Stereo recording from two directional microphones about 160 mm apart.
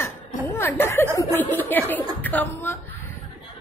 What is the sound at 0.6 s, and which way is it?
Speech, 15° left (ahead or behind).